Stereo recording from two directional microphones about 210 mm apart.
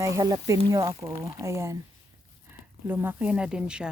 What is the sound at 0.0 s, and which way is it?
Speech, 15° right (ahead or behind).